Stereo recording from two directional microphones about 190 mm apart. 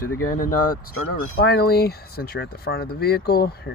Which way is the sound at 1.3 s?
60° left (ahead or behind).